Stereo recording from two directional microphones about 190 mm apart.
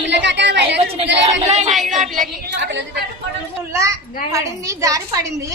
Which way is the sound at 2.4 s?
65° right (ahead or behind).